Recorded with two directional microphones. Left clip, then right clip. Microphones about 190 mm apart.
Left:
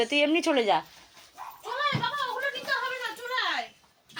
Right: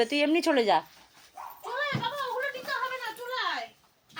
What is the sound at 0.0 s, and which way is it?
Speech, 15° right (ahead or behind).